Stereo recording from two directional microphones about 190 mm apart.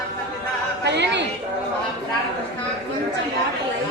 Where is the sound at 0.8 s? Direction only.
65° right (ahead or behind).